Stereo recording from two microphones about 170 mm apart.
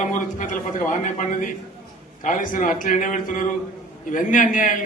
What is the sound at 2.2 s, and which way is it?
A man's voice, 50° left (ahead or behind).